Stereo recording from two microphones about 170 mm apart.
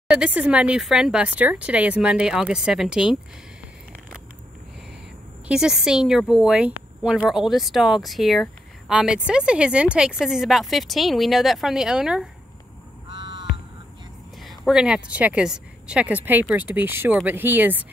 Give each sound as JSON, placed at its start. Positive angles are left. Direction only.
{"t": 0.1, "sound": "speech", "side_deg": -5}
{"t": 5.5, "sound": "speech", "side_deg": -5}
{"t": 14.4, "sound": "speech", "side_deg": 0}